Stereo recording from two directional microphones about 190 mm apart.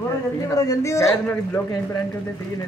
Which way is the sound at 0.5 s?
15° left (ahead or behind).